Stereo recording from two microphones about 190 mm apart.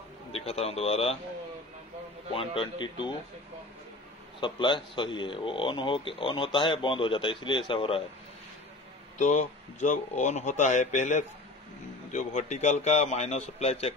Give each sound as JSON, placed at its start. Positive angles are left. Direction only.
{"t": 0.3, "sound": "a man's voice", "side_deg": 30}
{"t": 2.3, "sound": "a man's voice", "side_deg": 25}
{"t": 4.4, "sound": "a man's voice", "side_deg": 25}
{"t": 9.2, "sound": "a man's voice", "side_deg": 35}